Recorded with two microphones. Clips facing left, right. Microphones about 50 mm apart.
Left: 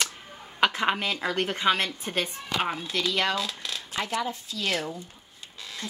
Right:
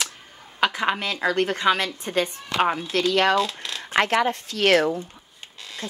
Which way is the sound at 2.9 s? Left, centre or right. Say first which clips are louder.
Right 7 dB; right.